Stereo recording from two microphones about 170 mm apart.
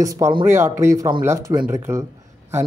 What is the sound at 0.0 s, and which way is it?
Speech, 20° right (ahead or behind).